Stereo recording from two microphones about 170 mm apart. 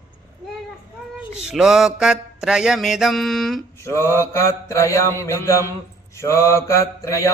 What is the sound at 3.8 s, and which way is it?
Mantra, 15° left (ahead or behind).